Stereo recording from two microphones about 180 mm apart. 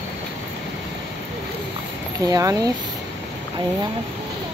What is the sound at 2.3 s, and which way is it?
Speech, 20° right (ahead or behind).